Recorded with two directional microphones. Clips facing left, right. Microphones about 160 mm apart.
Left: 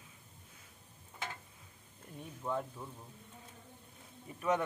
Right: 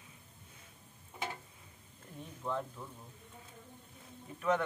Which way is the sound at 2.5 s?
10° left (ahead or behind).